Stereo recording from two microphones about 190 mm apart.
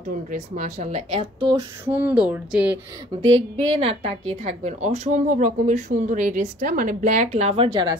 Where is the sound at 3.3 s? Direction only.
30° right (ahead or behind).